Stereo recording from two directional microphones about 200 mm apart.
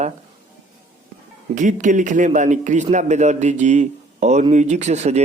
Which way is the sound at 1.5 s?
40° right (ahead or behind).